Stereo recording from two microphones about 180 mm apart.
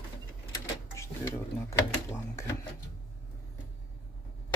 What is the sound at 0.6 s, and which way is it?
Speech, 15° left (ahead or behind).